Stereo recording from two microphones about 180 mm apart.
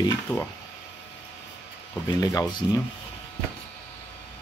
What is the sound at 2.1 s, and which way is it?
Speech, 20° left (ahead or behind).